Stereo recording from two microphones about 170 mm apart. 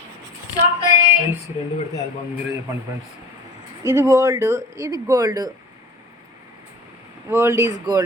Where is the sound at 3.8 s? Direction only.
15° right (ahead or behind).